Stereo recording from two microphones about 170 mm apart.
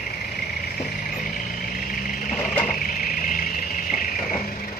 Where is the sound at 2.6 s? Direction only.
55° left (ahead or behind).